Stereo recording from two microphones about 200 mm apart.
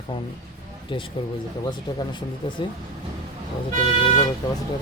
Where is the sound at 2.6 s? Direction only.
25° left (ahead or behind).